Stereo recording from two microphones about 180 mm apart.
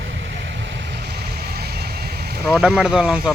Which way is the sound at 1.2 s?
60° right (ahead or behind).